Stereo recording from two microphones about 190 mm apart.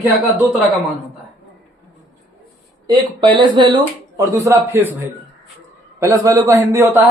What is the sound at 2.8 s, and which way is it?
Speech, 25° right (ahead or behind).